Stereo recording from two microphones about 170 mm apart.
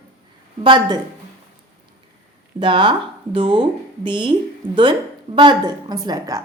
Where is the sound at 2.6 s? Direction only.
25° right (ahead or behind).